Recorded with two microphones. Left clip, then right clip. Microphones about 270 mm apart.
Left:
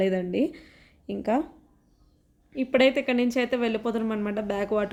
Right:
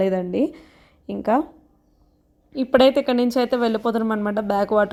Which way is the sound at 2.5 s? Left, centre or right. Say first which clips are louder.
Right 6 dB; right.